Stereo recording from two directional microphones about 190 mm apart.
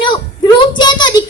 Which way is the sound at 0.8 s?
25° left (ahead or behind).